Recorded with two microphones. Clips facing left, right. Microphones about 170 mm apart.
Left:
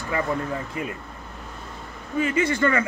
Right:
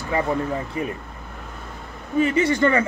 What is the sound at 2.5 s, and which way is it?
Speech, 35° right (ahead or behind).